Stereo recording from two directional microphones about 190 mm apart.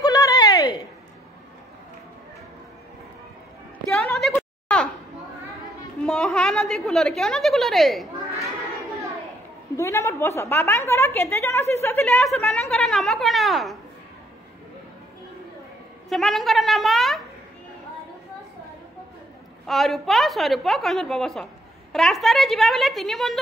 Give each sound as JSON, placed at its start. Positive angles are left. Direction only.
{"t": 0.0, "sound": "a sound", "side_deg": 20}
{"t": 4.1, "sound": "a sound", "side_deg": 0}
{"t": 6.0, "sound": "a woman's voice", "side_deg": 0}
{"t": 9.8, "sound": "a woman's voice", "side_deg": 15}
{"t": 16.1, "sound": "speech", "side_deg": 0}
{"t": 19.6, "sound": "speech", "side_deg": 0}